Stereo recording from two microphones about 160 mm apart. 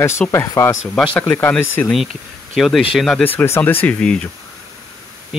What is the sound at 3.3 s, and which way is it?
Speech, 15° left (ahead or behind).